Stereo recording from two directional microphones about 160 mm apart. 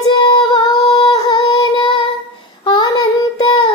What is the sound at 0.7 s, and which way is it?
Humming, 35° left (ahead or behind).